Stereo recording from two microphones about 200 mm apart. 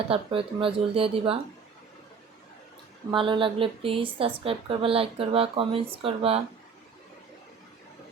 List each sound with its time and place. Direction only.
0.1 s speech: 25° right (ahead or behind)
3.1 s speech: 25° right (ahead or behind)